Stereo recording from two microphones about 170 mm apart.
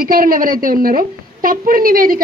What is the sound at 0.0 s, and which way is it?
A woman's voice, 60° right (ahead or behind).